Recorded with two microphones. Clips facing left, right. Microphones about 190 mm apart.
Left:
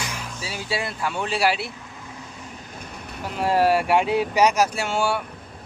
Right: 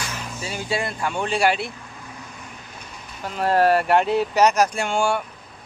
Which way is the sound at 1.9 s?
25° left (ahead or behind).